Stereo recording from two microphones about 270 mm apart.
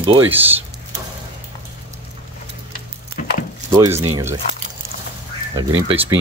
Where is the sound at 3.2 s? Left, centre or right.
Left.